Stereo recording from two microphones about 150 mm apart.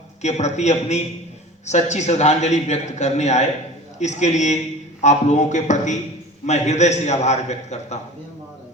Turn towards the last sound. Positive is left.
turn(degrees=50)  # may be behind; listen again after turning